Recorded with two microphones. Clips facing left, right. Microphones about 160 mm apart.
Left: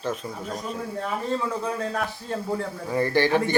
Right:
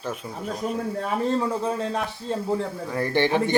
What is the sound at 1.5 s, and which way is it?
A man's voice, 25° right (ahead or behind).